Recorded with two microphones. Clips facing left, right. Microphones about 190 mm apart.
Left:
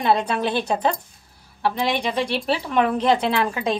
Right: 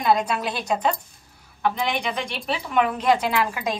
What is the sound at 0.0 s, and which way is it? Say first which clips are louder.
A woman's voice: left 1 dB; 30° left (ahead or behind).